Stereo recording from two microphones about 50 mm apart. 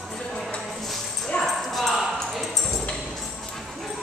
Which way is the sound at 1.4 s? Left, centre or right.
Centre.